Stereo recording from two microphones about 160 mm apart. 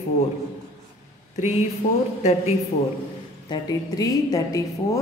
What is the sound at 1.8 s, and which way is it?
Speech, 40° left (ahead or behind).